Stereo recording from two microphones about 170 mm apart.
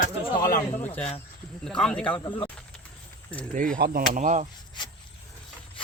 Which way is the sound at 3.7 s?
60° right (ahead or behind).